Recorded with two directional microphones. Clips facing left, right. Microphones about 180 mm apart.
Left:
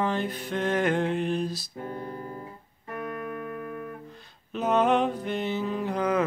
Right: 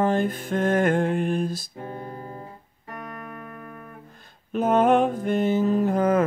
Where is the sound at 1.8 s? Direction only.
25° right (ahead or behind).